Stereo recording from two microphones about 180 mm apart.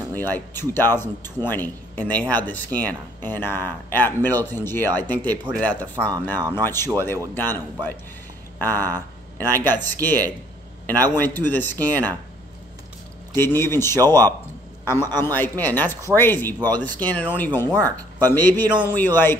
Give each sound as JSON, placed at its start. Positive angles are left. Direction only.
{"t": 0.1, "sound": "a man's voice", "side_deg": 10}
{"t": 13.3, "sound": "a man's voice", "side_deg": 10}
{"t": 13.9, "sound": "speech", "side_deg": -20}
{"t": 15.2, "sound": "a man's voice", "side_deg": 10}